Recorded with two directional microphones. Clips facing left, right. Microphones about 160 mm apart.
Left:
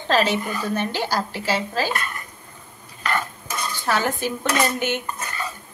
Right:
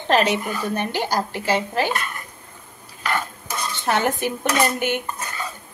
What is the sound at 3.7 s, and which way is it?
Dishes, 20° right (ahead or behind).